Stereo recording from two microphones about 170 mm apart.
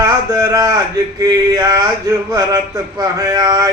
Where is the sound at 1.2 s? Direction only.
20° right (ahead or behind).